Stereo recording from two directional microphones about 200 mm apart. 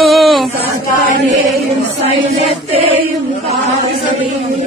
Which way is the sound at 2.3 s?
30° right (ahead or behind).